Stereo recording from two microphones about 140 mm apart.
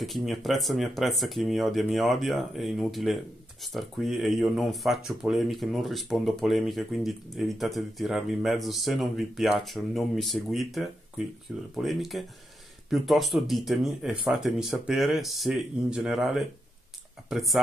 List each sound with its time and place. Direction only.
0.0 s speech: centre (ahead or behind)